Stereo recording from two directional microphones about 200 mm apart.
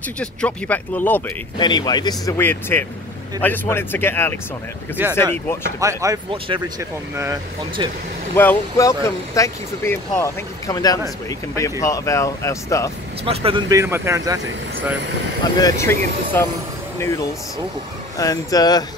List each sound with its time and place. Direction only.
0.2 s speech: 5° left (ahead or behind)
1.6 s speech: 20° left (ahead or behind)
5.8 s speech: 15° right (ahead or behind)
8.4 s speech: 15° left (ahead or behind)
13.2 s speech: 30° right (ahead or behind)
13.7 s speech: 15° right (ahead or behind)
15.4 s speech: 15° left (ahead or behind)
18.1 s speech: 15° left (ahead or behind)